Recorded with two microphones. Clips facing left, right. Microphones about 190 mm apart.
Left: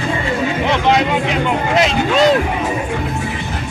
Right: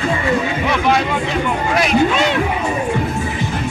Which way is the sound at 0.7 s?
20° left (ahead or behind).